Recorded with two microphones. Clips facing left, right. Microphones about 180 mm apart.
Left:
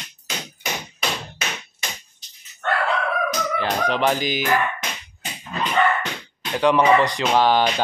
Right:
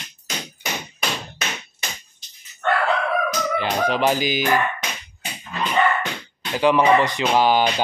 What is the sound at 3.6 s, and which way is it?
Speech, 5° right (ahead or behind).